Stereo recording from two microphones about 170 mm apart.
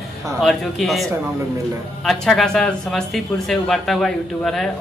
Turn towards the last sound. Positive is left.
turn(degrees=0)  # may be behind; listen again after turning